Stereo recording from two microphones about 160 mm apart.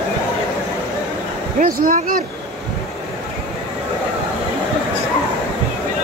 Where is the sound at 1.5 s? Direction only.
55° right (ahead or behind).